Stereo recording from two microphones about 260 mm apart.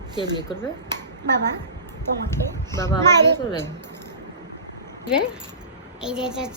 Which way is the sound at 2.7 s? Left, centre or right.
Centre.